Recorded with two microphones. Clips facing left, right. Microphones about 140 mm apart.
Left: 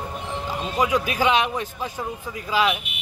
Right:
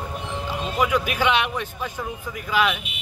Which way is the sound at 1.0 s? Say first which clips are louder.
Left 1 dB; 35° left (ahead or behind).